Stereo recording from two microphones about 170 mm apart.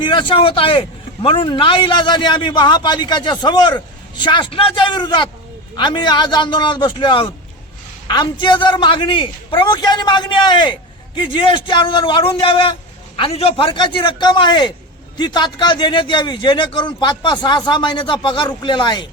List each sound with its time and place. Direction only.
0.0 s a man's voice: 30° left (ahead or behind)